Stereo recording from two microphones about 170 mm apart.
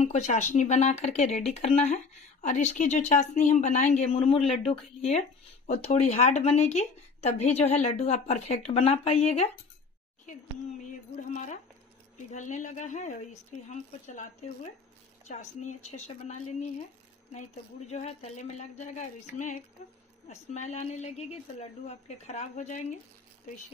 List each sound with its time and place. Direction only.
0.0 s a woman's voice: 45° left (ahead or behind)
11.1 s a woman's voice: 45° left (ahead or behind)
17.8 s a woman's voice: 40° left (ahead or behind)